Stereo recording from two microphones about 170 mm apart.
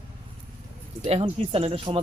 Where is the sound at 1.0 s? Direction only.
35° right (ahead or behind).